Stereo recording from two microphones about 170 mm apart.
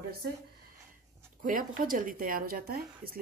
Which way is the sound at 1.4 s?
55° right (ahead or behind).